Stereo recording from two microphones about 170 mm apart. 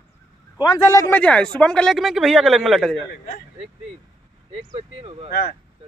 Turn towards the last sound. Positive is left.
turn(degrees=-35)  # may be behind; listen again after turning